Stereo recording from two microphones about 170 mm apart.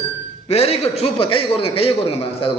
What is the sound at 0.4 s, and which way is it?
A man's voice, 35° left (ahead or behind).